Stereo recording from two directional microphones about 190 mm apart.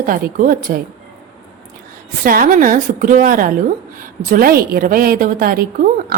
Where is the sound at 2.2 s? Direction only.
50° right (ahead or behind).